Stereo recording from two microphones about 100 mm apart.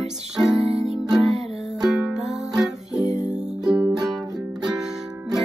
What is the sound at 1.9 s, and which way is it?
Music, 10° right (ahead or behind).